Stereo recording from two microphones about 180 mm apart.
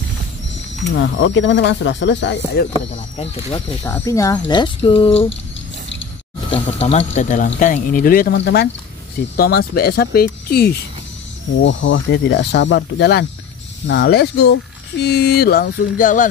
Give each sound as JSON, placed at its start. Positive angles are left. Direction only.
{"t": 0.9, "sound": "speech", "side_deg": 90}
{"t": 2.7, "sound": "speech", "side_deg": 35}
{"t": 3.8, "sound": "speech", "side_deg": 15}
{"t": 6.5, "sound": "speech", "side_deg": 35}
{"t": 8.4, "sound": "speech", "side_deg": 70}
{"t": 9.4, "sound": "speech", "side_deg": 60}
{"t": 11.6, "sound": "speech", "side_deg": 90}